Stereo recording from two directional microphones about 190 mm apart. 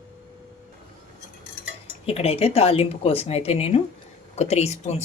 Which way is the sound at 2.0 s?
30° left (ahead or behind).